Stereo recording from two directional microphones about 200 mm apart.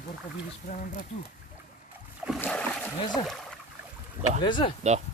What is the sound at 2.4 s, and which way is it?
Splash, 5° left (ahead or behind).